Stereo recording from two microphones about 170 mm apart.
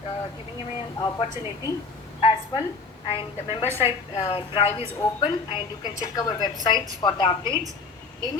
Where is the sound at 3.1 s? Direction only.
30° left (ahead or behind).